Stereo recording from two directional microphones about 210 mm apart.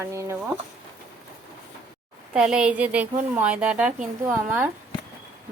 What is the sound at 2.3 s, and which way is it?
A woman's voice, 5° right (ahead or behind).